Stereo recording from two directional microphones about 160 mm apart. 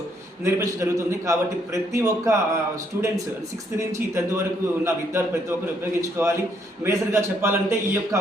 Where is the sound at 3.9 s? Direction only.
15° right (ahead or behind).